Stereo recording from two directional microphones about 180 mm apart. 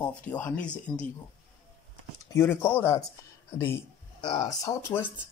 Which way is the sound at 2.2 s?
15° left (ahead or behind).